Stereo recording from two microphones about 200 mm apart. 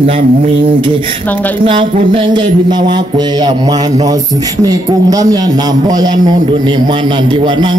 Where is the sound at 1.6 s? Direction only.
25° right (ahead or behind).